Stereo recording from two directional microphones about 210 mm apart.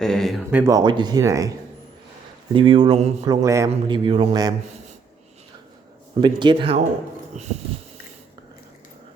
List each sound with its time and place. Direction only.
0.0 s speech: centre (ahead or behind)
0.6 s a man's voice: 20° right (ahead or behind)
3.2 s a man's voice: 15° right (ahead or behind)
6.1 s a man's voice: 20° right (ahead or behind)